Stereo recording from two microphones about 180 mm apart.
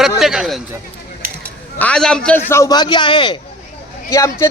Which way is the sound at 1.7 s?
5° left (ahead or behind).